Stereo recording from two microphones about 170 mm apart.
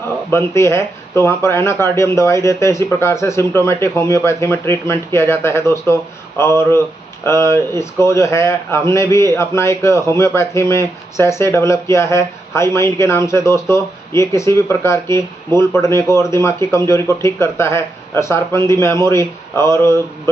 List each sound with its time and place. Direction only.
0.3 s speech: 15° left (ahead or behind)